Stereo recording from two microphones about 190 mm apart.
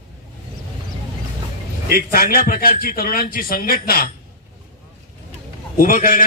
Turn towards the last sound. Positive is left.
turn(degrees=45)  # may be behind; listen again after turning